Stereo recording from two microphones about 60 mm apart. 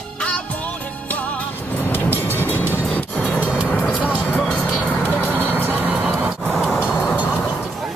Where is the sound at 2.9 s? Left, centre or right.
Left.